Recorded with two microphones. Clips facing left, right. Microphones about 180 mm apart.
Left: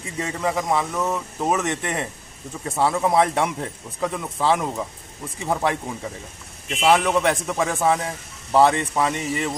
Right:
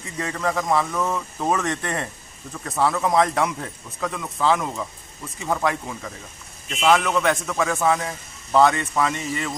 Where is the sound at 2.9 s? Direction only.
10° left (ahead or behind).